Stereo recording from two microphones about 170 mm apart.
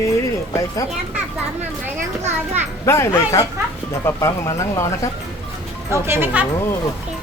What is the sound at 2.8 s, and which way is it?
Speech, 15° left (ahead or behind).